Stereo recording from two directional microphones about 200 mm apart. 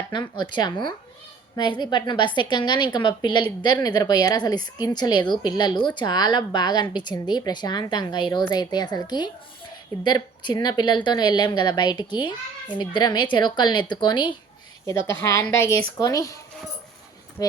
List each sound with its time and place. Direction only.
0.1 s a woman's voice: 20° left (ahead or behind)